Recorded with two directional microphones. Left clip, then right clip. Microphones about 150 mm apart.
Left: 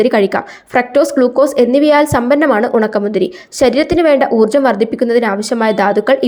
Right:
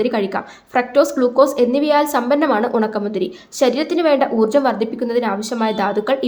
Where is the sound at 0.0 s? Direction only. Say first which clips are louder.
Left 7 dB; 35° left (ahead or behind).